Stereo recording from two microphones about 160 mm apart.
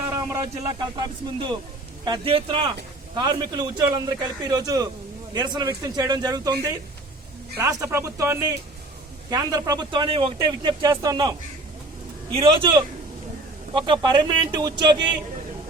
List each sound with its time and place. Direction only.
0.1 s speech: 15° right (ahead or behind)
7.5 s speech: 15° right (ahead or behind)
13.7 s speech: 30° right (ahead or behind)